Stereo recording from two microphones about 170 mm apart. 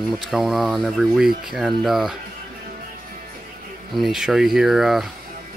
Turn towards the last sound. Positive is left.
turn(degrees=0)  # may be behind; listen again after turning